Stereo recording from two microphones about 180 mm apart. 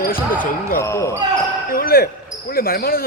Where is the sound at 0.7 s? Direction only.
15° left (ahead or behind).